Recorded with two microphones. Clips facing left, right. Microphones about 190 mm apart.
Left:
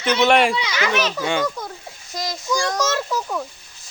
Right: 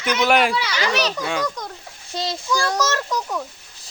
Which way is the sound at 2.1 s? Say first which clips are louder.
Right 2 dB; 30° right (ahead or behind).